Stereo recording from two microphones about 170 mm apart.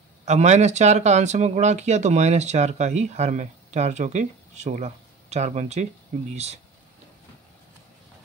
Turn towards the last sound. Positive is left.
turn(degrees=-40)  # may be behind; listen again after turning